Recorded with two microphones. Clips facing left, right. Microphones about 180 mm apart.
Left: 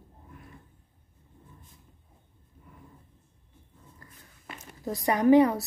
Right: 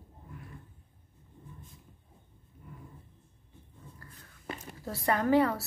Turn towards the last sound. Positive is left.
turn(degrees=15)  # may be behind; listen again after turning